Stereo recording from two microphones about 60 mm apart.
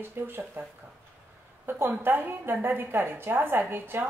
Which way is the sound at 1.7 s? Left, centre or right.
Right.